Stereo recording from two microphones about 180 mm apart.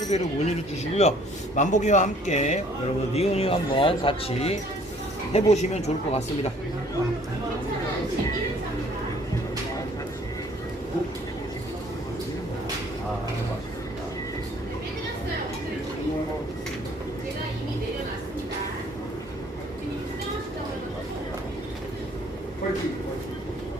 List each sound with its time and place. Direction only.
0.1 s speech: 40° left (ahead or behind)